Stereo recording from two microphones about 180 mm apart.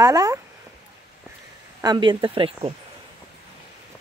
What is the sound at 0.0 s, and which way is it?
Speech, 20° right (ahead or behind).